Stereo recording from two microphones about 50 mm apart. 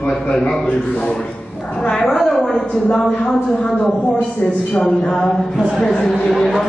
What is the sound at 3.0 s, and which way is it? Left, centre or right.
Speech, centre.